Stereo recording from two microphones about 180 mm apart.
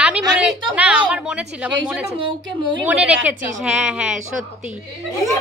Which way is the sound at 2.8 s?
5° right (ahead or behind).